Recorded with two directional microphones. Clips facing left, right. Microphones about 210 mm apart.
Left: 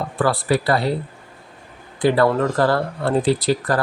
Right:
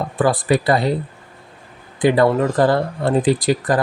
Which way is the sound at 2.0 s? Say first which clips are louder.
Right 2 dB; 15° right (ahead or behind).